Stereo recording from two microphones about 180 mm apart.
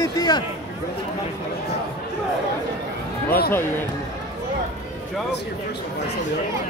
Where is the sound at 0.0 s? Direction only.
20° left (ahead or behind).